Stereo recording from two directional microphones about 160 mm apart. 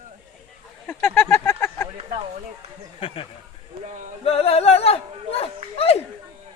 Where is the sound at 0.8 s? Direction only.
15° left (ahead or behind).